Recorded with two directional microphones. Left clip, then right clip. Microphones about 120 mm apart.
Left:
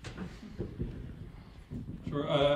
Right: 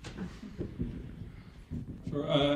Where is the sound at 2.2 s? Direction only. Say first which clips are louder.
Left 1 dB; 40° left (ahead or behind).